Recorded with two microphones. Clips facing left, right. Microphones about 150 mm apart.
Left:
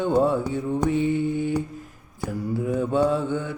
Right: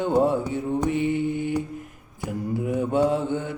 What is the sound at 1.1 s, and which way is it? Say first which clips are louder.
Mantra: left 1 dB; 55° right (ahead or behind).